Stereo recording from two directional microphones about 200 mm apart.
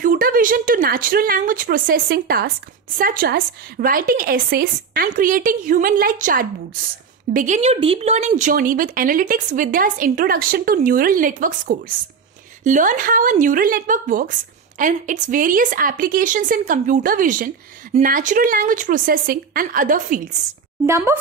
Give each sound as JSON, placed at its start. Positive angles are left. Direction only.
{"t": 0.0, "sound": "a woman's voice", "side_deg": -45}
{"t": 20.8, "sound": "speech", "side_deg": -10}